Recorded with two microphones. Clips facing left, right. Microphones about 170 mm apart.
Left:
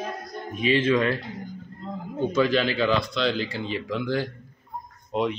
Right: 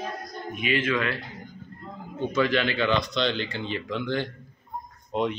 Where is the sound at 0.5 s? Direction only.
30° left (ahead or behind).